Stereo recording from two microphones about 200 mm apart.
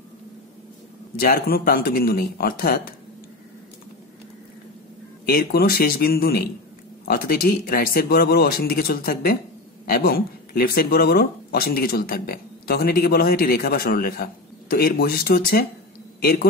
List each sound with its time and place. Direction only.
1.2 s speech: 50° left (ahead or behind)
5.2 s speech: 50° left (ahead or behind)